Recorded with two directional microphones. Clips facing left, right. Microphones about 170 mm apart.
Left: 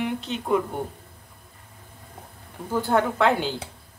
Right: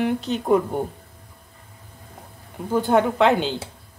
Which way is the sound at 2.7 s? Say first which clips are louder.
Right 4 dB; 20° right (ahead or behind).